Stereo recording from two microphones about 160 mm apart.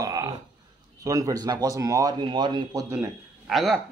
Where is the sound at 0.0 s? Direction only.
25° right (ahead or behind).